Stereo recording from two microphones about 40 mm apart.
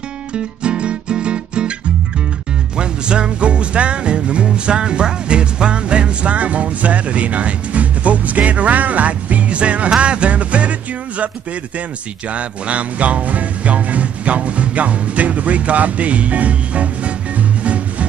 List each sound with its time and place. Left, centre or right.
0.3 s music: right
2.8 s music: right
12.3 s music: right